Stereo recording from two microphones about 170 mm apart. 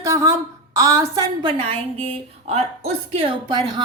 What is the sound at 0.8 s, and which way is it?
A woman's voice, 20° right (ahead or behind).